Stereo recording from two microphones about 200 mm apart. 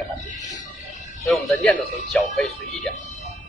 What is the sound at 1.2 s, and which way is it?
A man's voice, 5° left (ahead or behind).